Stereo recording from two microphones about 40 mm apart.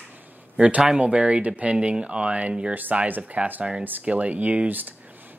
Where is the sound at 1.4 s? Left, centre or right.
Right.